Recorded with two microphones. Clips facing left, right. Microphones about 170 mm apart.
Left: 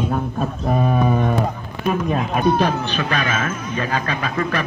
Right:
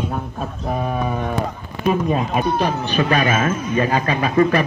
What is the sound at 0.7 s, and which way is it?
A man's voice, centre (ahead or behind).